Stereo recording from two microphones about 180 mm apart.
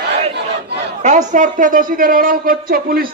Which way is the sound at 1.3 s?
45° right (ahead or behind).